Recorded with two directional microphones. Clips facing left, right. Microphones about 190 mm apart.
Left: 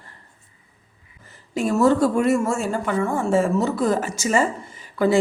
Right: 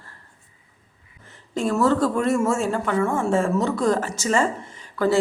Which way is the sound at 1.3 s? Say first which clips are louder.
Left 1 dB; 5° left (ahead or behind).